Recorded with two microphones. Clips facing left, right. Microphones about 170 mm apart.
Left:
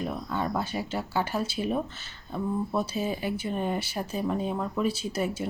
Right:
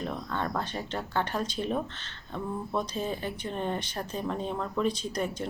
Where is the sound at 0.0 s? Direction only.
10° left (ahead or behind).